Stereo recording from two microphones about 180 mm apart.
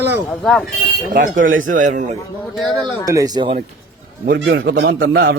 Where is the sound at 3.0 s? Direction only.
20° right (ahead or behind).